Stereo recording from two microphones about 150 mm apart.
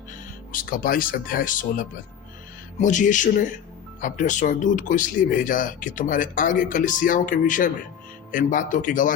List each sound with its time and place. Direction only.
0.5 s speech: 70° left (ahead or behind)